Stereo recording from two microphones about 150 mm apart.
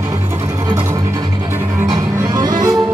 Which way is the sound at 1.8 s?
25° right (ahead or behind).